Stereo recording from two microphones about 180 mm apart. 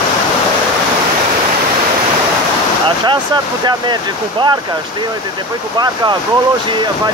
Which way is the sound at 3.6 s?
25° right (ahead or behind).